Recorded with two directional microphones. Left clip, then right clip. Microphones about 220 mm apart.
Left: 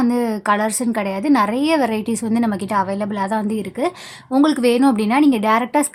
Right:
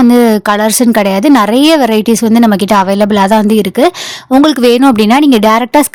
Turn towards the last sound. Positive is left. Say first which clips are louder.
# right 9 dB
turn(degrees=-40)  # may be behind; listen again after turning